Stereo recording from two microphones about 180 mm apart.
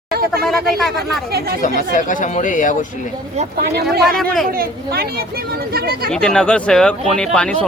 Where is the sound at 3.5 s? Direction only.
60° right (ahead or behind).